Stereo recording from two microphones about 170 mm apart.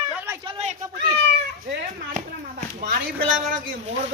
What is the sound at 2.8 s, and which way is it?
Speech, 55° right (ahead or behind).